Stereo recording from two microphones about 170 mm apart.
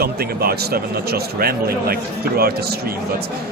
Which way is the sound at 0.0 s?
65° right (ahead or behind).